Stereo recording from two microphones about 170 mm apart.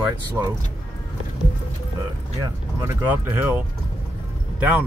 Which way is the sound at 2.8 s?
15° right (ahead or behind).